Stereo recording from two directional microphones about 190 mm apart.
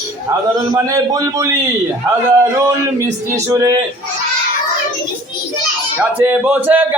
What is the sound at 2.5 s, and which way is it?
Speech, 15° right (ahead or behind).